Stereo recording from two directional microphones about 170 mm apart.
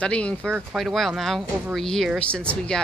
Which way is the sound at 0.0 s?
5° left (ahead or behind).